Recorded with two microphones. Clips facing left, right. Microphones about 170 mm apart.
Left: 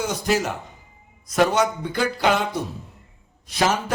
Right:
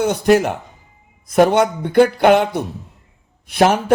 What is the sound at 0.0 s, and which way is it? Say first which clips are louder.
A man's voice: right 9 dB; 60° right (ahead or behind).